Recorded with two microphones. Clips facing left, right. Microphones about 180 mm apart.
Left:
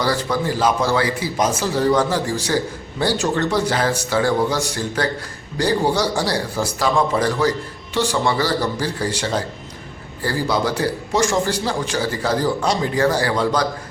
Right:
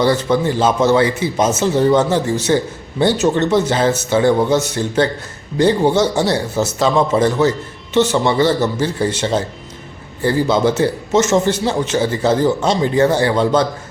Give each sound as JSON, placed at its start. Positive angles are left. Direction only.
{"t": 0.0, "sound": "a man's voice", "side_deg": -25}